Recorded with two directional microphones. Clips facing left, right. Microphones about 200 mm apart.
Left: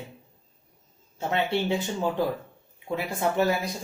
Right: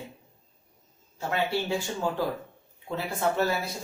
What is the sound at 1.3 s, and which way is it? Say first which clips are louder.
A woman's voice: left 2 dB; 20° left (ahead or behind).